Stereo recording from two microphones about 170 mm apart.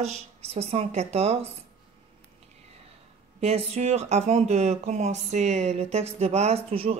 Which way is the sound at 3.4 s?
40° right (ahead or behind).